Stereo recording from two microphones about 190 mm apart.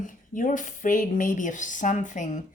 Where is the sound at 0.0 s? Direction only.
45° left (ahead or behind).